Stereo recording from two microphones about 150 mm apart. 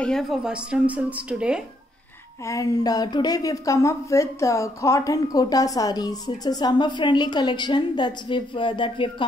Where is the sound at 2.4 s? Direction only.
20° left (ahead or behind).